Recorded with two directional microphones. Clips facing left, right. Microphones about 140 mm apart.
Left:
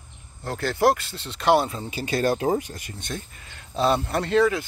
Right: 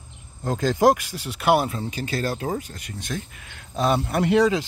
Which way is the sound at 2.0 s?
15° left (ahead or behind).